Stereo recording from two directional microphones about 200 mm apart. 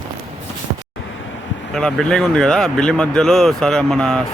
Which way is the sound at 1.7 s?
Centre (ahead or behind).